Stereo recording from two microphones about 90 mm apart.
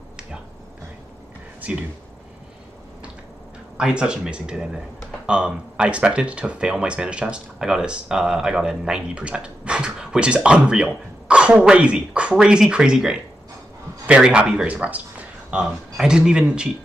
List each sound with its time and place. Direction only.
1.6 s speech: 15° right (ahead or behind)
3.7 s speech: 10° right (ahead or behind)